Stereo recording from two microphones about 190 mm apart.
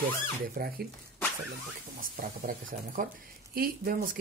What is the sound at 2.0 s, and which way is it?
Speech, 50° right (ahead or behind).